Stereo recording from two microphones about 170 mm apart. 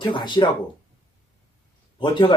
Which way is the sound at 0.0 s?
25° left (ahead or behind).